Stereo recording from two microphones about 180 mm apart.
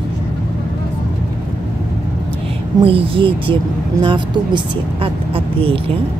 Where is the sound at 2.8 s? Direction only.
30° right (ahead or behind).